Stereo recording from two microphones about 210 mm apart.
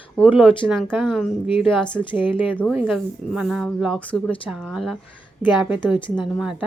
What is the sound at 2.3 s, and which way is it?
Speech, 25° left (ahead or behind).